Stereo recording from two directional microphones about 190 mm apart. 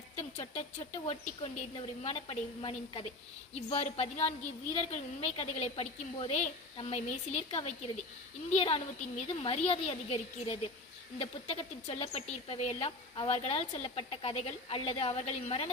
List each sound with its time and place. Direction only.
0.2 s speech: 35° left (ahead or behind)